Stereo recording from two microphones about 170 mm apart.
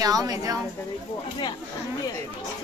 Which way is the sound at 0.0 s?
20° right (ahead or behind).